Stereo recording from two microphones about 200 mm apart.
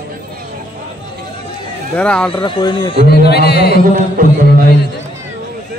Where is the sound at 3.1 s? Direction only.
55° left (ahead or behind).